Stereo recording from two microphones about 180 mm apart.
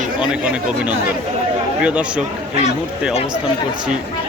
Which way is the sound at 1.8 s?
5° right (ahead or behind).